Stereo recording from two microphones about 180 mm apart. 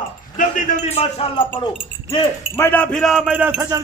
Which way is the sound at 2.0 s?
10° left (ahead or behind).